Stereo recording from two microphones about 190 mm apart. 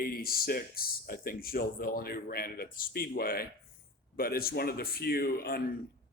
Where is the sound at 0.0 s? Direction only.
50° left (ahead or behind).